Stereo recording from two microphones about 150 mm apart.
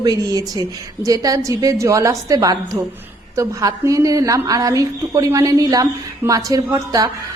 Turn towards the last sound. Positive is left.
turn(degrees=-25)  # may be behind; listen again after turning